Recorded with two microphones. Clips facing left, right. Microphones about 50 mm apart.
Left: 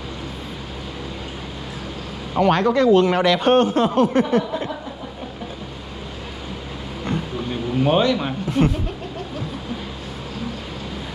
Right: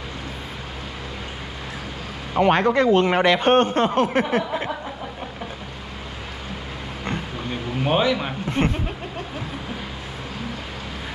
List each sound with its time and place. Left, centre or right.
2.3 s speech: centre
3.3 s speech: centre
7.8 s speech: centre